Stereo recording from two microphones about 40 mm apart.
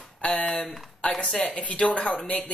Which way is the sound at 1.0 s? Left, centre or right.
Left.